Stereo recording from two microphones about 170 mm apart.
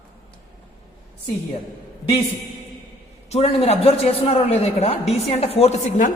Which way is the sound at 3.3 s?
35° left (ahead or behind).